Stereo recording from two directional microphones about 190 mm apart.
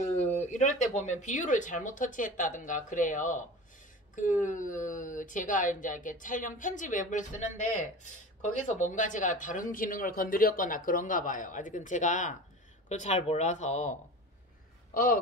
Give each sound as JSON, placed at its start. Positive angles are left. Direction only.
{"t": 0.0, "sound": "speech", "side_deg": 40}